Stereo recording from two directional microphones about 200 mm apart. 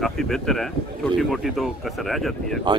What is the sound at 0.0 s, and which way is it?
Speech, centre (ahead or behind).